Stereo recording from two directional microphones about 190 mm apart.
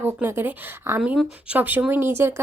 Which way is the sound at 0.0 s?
10° right (ahead or behind).